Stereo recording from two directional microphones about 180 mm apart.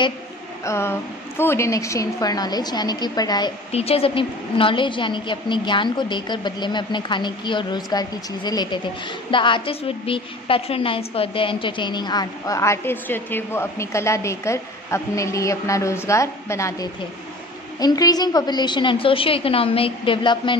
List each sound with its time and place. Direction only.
0.7 s a woman's voice: 15° left (ahead or behind)
3.7 s a woman's voice: 35° left (ahead or behind)